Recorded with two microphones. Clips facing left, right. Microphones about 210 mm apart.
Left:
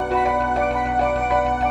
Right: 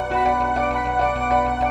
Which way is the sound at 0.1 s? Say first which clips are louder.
Even; centre (ahead or behind).